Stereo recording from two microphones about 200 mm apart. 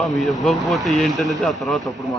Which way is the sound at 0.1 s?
Centre (ahead or behind).